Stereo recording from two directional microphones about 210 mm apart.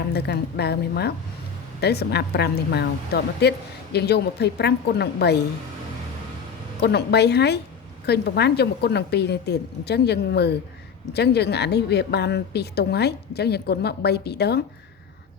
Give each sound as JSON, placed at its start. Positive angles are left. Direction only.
{"t": 0.1, "sound": "a woman's voice", "side_deg": 50}
{"t": 6.8, "sound": "a woman's voice", "side_deg": 50}